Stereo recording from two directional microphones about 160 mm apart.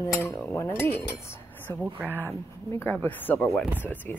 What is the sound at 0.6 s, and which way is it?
Speech, 15° left (ahead or behind).